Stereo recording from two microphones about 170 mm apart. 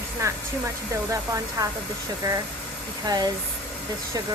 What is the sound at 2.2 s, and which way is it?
Speech, 20° right (ahead or behind).